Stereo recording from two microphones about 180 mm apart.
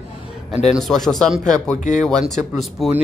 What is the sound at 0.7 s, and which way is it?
Speech, centre (ahead or behind).